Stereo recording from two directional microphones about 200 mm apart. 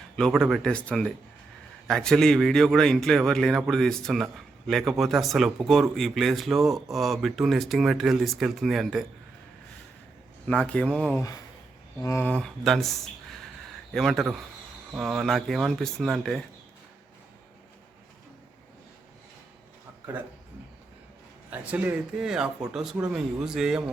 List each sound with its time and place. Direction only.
0.2 s speech: centre (ahead or behind)
10.4 s speech: 5° left (ahead or behind)
11.2 s speech: 15° left (ahead or behind); by 16.4 s centre (ahead or behind)
21.5 s speech: 10° right (ahead or behind)